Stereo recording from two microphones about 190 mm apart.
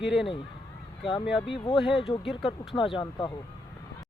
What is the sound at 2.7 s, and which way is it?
Speech, 25° left (ahead or behind).